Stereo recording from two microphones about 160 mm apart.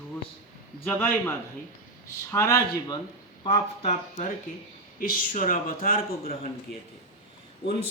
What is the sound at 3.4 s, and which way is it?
Speech, 40° left (ahead or behind).